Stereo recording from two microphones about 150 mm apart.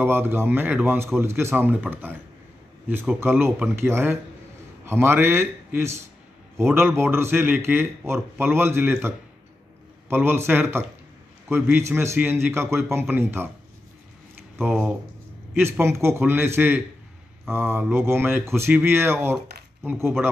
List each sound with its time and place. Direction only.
0.0 s speech: 15° right (ahead or behind)
14.7 s speech: 5° right (ahead or behind)
15.5 s speech: 15° right (ahead or behind)